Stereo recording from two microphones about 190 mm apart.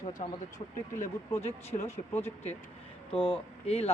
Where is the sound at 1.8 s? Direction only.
10° left (ahead or behind).